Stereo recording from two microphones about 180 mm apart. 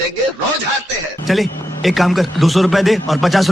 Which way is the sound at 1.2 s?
Centre (ahead or behind).